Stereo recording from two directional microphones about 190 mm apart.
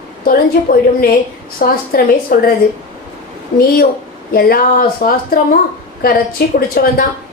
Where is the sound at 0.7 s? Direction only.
45° left (ahead or behind).